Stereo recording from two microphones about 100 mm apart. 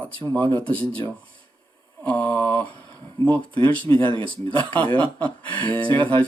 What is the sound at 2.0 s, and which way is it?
Mantra, 15° left (ahead or behind).